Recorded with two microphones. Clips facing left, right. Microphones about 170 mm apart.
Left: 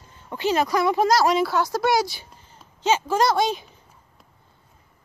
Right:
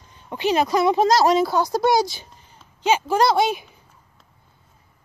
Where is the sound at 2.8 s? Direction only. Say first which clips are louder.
Right 2 dB; 15° right (ahead or behind).